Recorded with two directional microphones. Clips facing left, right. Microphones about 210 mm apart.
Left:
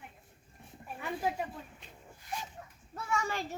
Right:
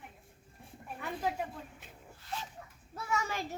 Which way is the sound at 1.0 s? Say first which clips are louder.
Left 1 dB; centre (ahead or behind).